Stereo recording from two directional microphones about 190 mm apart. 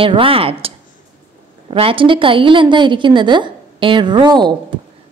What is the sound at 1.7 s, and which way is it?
A woman's voice, 30° right (ahead or behind).